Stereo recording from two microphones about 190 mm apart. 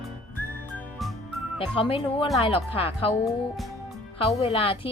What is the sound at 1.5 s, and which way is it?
Speech, 30° left (ahead or behind).